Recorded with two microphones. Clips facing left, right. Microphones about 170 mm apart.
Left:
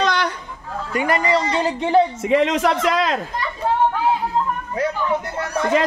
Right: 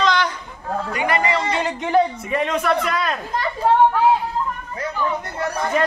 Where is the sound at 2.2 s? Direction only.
90° left.